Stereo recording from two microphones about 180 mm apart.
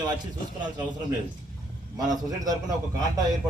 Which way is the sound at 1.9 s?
20° right (ahead or behind).